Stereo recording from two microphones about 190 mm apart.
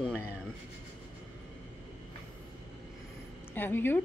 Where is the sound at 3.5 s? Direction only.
10° left (ahead or behind).